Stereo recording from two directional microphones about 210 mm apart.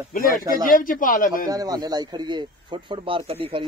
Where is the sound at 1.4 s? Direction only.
20° right (ahead or behind).